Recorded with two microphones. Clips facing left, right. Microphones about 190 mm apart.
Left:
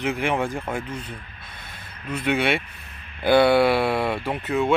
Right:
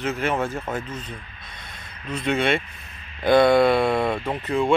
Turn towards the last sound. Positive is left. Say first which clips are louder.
# even
turn(degrees=5)  # may be behind; listen again after turning